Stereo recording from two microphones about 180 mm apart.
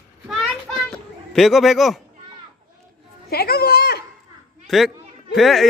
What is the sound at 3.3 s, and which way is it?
Speech, 60° left (ahead or behind).